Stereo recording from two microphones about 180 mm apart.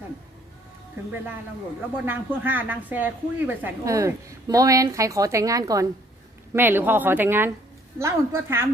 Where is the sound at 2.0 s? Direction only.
10° right (ahead or behind).